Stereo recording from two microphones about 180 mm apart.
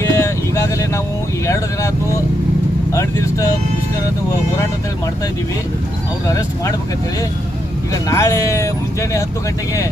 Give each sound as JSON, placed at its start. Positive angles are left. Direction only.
{"t": 0.1, "sound": "vehicle", "side_deg": 15}
{"t": 1.5, "sound": "speech", "side_deg": 15}
{"t": 6.2, "sound": "speech", "side_deg": 20}
{"t": 8.1, "sound": "speech", "side_deg": 15}